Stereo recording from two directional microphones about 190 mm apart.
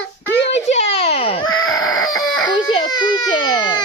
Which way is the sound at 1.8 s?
Centre (ahead or behind).